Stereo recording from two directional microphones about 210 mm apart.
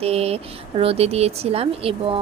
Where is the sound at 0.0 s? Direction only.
30° right (ahead or behind).